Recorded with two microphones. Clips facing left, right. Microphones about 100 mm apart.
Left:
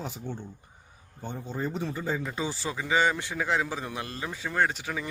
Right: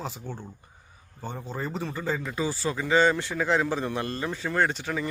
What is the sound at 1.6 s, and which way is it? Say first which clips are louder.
Speech: left 1 dB; 90° right.